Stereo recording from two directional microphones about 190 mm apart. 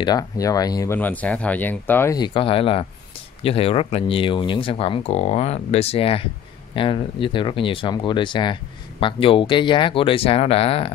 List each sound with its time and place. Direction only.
0.0 s speech: 20° left (ahead or behind)